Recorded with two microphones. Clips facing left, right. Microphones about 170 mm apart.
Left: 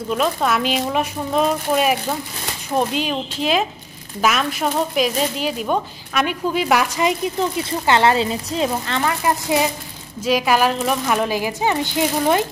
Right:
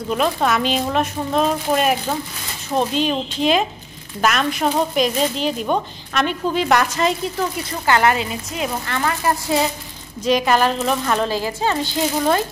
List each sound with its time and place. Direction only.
0.1 s speech: centre (ahead or behind)
7.5 s a woman's voice: 25° left (ahead or behind)